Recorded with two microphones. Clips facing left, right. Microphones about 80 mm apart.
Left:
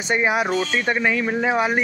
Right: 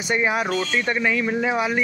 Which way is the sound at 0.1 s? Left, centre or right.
Centre.